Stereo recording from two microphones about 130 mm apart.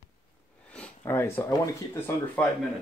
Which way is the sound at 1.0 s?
15° left (ahead or behind).